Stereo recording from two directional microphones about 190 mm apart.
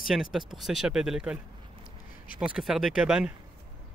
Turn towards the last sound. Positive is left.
turn(degrees=-5)  # may be behind; listen again after turning